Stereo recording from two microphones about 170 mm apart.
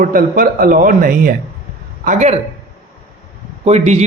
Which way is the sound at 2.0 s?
40° right (ahead or behind).